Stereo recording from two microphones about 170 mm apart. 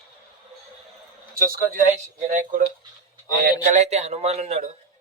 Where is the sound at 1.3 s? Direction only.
55° right (ahead or behind).